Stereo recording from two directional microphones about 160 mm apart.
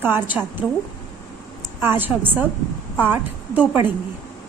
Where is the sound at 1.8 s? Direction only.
15° right (ahead or behind).